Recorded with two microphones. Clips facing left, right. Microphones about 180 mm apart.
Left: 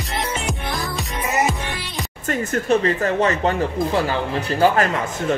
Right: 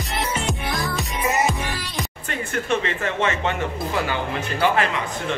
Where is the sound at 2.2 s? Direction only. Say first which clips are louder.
Left 6 dB; 40° left (ahead or behind).